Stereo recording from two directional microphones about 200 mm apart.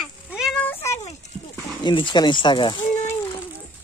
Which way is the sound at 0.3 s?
Centre (ahead or behind).